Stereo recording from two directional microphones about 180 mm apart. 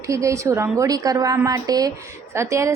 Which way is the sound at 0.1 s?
15° right (ahead or behind).